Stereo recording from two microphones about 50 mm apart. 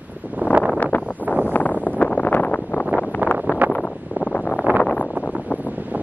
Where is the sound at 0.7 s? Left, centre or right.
Left.